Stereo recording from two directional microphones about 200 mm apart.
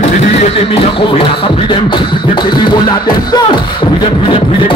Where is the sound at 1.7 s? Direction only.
25° left (ahead or behind).